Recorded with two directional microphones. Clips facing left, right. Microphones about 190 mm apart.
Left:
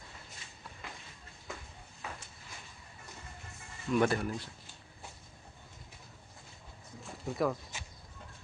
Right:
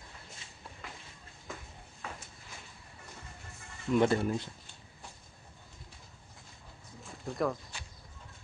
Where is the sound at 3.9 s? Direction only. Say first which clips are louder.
Right 2 dB; 20° right (ahead or behind).